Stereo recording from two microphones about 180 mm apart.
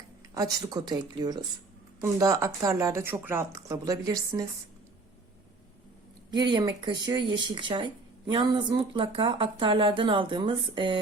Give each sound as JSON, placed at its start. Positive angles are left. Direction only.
{"t": 0.3, "sound": "speech", "side_deg": -20}
{"t": 6.3, "sound": "speech", "side_deg": -25}